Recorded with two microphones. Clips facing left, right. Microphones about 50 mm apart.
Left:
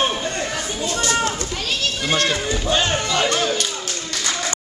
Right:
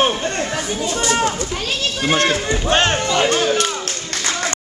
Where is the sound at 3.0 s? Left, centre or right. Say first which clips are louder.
Right 3 dB; right.